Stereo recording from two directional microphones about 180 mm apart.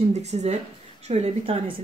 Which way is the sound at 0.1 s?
35° right (ahead or behind).